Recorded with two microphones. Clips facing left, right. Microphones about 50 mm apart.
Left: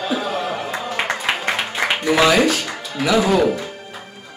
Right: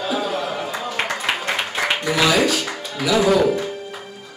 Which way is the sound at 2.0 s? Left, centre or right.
Left.